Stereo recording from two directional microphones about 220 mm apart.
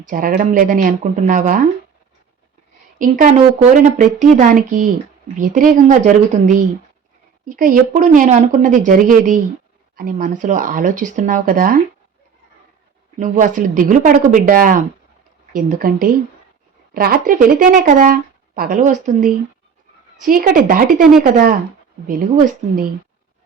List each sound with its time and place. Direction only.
0.1 s speech: 40° right (ahead or behind)
3.0 s speech: 35° right (ahead or behind)
13.1 s speech: 35° right (ahead or behind)